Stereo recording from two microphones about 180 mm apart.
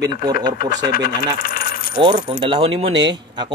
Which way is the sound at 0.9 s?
55° left (ahead or behind).